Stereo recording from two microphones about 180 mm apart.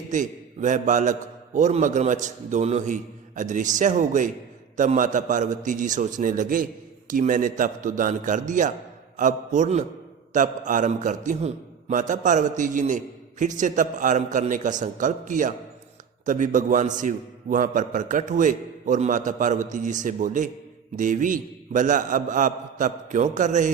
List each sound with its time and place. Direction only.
0.1 s a man's voice: 45° right (ahead or behind)